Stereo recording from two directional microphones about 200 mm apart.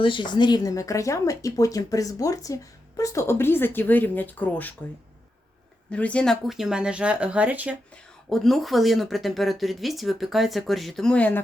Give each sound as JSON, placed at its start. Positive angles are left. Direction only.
{"t": 0.0, "sound": "speech", "side_deg": 25}
{"t": 5.9, "sound": "speech", "side_deg": 5}